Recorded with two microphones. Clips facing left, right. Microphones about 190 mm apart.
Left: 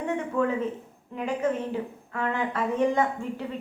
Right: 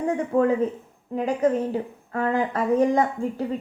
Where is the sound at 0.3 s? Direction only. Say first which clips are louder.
Right 7 dB; 35° right (ahead or behind).